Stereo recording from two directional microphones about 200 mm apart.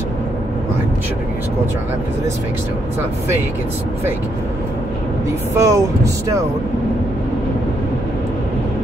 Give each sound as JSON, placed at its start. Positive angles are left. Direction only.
{"t": 5.6, "sound": "speech", "side_deg": -15}